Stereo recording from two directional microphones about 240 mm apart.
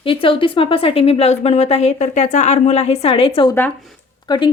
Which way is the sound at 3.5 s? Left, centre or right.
Centre.